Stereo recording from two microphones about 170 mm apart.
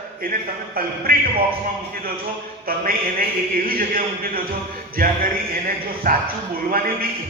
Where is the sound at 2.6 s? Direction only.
60° right (ahead or behind).